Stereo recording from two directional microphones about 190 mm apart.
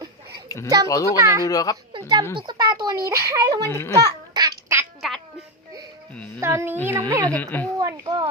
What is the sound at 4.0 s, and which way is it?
Babbling, 20° right (ahead or behind).